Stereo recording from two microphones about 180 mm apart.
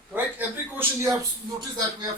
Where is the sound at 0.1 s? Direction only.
10° right (ahead or behind).